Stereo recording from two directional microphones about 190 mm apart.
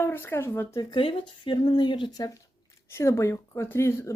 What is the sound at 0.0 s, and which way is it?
Speech, 10° left (ahead or behind).